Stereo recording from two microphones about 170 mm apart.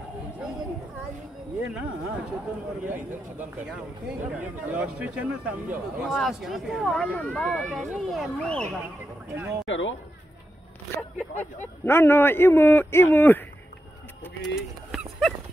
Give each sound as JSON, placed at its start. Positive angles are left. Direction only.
{"t": 1.7, "sound": "speech", "side_deg": -10}
{"t": 9.3, "sound": "speech", "side_deg": -15}
{"t": 9.7, "sound": "speech", "side_deg": 90}
{"t": 11.8, "sound": "a man's voice", "side_deg": 15}
{"t": 14.5, "sound": "dog", "side_deg": 0}